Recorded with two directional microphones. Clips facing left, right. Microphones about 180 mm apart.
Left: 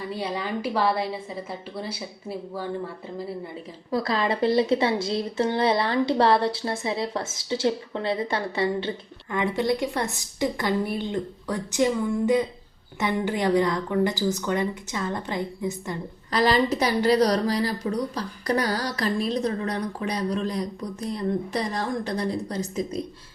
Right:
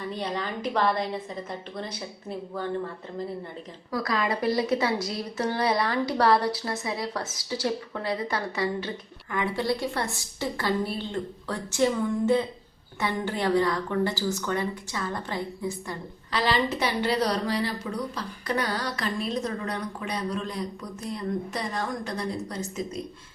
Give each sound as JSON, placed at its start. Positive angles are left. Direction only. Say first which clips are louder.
{"t": 0.1, "sound": "a woman's voice", "louder": "left 3 dB", "side_deg": 10}
{"t": 3.9, "sound": "a woman's voice", "louder": "left 3 dB", "side_deg": 30}
{"t": 16.3, "sound": "a woman's voice", "louder": "left 4 dB", "side_deg": 45}